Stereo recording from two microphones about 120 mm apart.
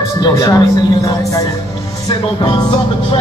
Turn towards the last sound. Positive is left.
turn(degrees=35)  # may be behind; listen again after turning